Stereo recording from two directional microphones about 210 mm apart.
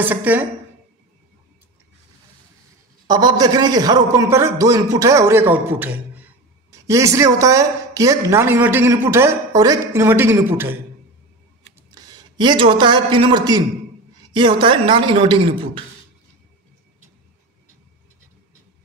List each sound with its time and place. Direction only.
0.0 s a woman's voice: 10° right (ahead or behind)
3.1 s a woman's voice: 20° right (ahead or behind)